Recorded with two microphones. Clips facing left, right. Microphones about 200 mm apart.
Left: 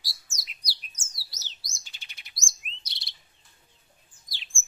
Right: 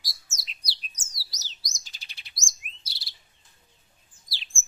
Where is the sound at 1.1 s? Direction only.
40° right (ahead or behind).